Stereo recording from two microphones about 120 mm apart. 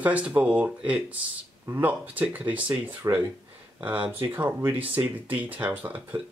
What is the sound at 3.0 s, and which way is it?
Speech, 25° right (ahead or behind).